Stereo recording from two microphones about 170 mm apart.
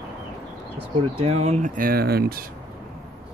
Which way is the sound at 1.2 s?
40° right (ahead or behind).